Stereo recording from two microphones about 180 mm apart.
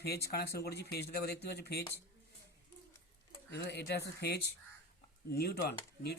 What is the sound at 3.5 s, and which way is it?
Speech, 65° left (ahead or behind).